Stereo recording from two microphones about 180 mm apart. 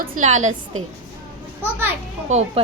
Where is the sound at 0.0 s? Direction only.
45° right (ahead or behind).